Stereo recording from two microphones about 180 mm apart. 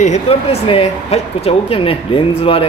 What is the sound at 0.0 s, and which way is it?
Speech, 35° left (ahead or behind).